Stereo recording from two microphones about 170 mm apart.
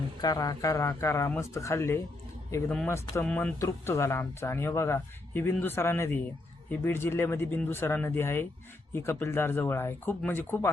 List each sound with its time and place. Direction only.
0.2 s speech: 25° left (ahead or behind)
2.6 s speech: 5° left (ahead or behind)
3.6 s speech: 20° left (ahead or behind)